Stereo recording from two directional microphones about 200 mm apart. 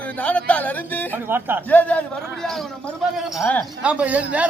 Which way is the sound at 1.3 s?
10° right (ahead or behind).